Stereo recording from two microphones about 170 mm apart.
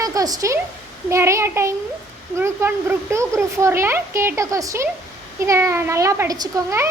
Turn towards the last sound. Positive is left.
turn(degrees=-20)  # may be behind; listen again after turning